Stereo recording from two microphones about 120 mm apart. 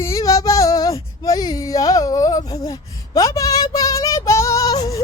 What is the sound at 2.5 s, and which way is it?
Child singing, 30° left (ahead or behind).